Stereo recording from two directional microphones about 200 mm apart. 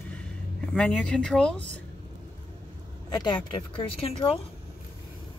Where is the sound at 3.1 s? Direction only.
25° left (ahead or behind).